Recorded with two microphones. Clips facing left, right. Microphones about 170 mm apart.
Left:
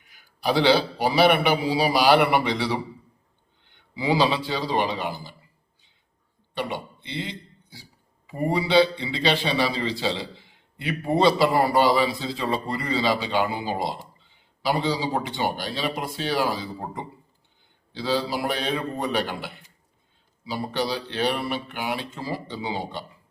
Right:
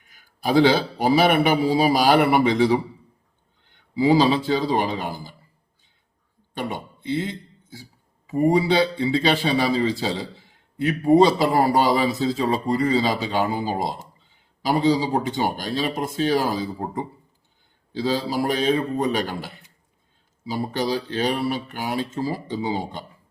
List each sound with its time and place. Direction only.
0.1 s a man's voice: 45° right (ahead or behind)
6.5 s a man's voice: 50° right (ahead or behind)